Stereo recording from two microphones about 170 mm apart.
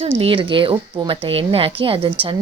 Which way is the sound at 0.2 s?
30° right (ahead or behind).